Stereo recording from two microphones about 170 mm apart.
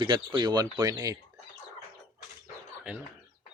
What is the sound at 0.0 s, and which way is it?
Speech, 30° right (ahead or behind).